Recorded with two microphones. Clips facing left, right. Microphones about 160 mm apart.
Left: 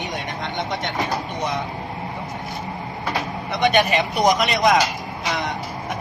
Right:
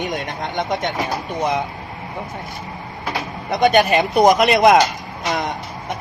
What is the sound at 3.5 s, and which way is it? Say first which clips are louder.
Speech: right 4 dB; 45° right (ahead or behind).